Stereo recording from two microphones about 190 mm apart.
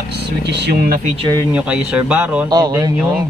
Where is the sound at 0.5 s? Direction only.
55° right (ahead or behind).